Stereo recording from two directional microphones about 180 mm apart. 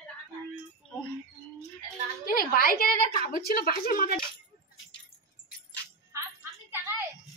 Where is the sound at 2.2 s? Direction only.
55° left (ahead or behind).